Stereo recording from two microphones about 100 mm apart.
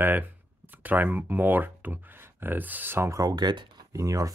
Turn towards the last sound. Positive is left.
turn(degrees=-35)  # may be behind; listen again after turning